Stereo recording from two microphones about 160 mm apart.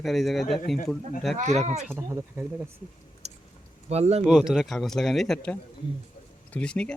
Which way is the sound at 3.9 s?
40° right (ahead or behind).